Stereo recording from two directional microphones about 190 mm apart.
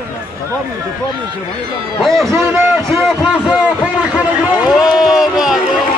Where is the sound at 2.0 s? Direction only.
Centre (ahead or behind).